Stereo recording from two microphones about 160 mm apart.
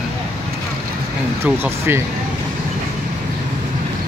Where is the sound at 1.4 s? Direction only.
15° right (ahead or behind).